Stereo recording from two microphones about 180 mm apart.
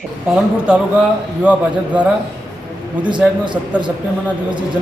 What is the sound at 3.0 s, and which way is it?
Speech, 25° right (ahead or behind).